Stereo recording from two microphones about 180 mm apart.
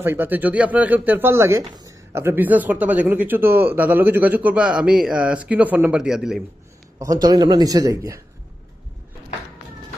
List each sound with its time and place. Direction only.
0.0 s speech: 10° right (ahead or behind)
7.0 s speech: 20° right (ahead or behind)